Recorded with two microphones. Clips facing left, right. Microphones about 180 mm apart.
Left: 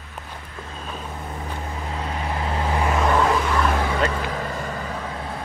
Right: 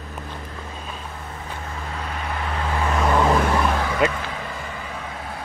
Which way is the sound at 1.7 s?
25° left (ahead or behind).